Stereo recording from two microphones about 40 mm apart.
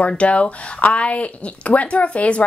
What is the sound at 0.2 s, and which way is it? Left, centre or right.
A woman's voice, left.